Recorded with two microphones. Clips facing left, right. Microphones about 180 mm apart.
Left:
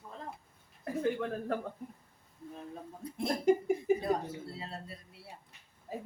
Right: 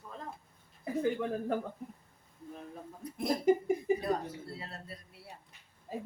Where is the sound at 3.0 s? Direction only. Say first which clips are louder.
Left 1 dB; 25° left (ahead or behind).